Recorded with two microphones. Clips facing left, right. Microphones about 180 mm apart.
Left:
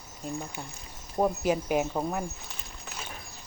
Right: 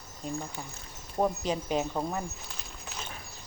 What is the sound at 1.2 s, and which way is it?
Speech, 10° left (ahead or behind).